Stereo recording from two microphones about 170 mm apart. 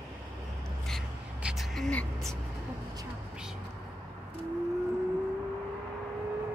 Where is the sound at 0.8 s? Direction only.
Centre (ahead or behind).